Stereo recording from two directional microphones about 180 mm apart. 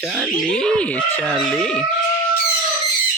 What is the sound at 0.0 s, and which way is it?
Speech, 5° right (ahead or behind).